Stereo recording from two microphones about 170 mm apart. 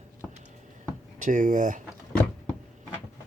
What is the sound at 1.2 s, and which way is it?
Speech, 50° right (ahead or behind).